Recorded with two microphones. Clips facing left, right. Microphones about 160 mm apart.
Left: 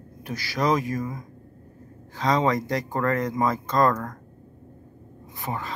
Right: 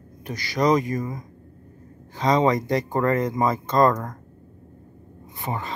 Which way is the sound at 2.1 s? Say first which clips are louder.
Right 3 dB; centre (ahead or behind).